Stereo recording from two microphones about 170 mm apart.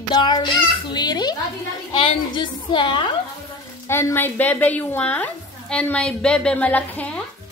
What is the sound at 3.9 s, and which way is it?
A woman's voice, 15° left (ahead or behind).